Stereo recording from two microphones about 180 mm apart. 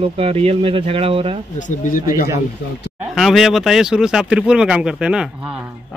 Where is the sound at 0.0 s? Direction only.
35° right (ahead or behind).